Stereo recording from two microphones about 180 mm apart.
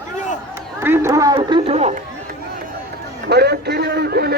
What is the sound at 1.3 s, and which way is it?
Speech, 30° right (ahead or behind).